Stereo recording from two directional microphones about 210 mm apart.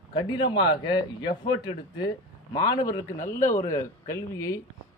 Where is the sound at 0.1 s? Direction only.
20° left (ahead or behind).